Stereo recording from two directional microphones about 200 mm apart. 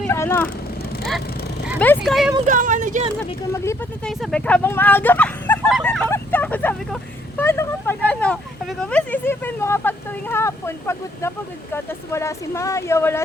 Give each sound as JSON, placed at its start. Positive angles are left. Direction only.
{"t": 0.0, "sound": "vehicle", "side_deg": 10}
{"t": 1.8, "sound": "speech", "side_deg": 5}
{"t": 2.5, "sound": "speech", "side_deg": -40}
{"t": 3.5, "sound": "speech", "side_deg": 15}
{"t": 4.1, "sound": "speech", "side_deg": 0}